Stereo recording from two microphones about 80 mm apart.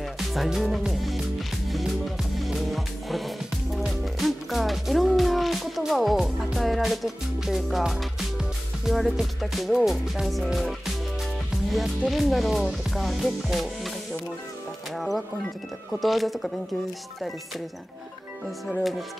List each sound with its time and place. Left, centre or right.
0.3 s music: centre
15.0 s speech: centre
15.9 s music: centre
18.7 s music: centre